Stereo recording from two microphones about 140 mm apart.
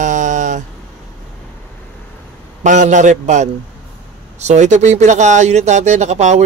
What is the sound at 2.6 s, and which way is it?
Speech, 60° right (ahead or behind).